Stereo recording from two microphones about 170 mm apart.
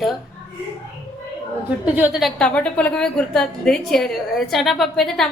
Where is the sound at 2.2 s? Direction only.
5° left (ahead or behind).